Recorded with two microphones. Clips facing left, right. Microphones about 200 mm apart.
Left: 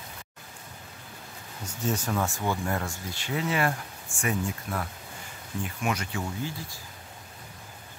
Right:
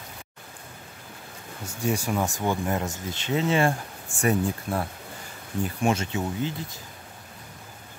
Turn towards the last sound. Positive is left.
turn(degrees=-20)  # may be behind; listen again after turning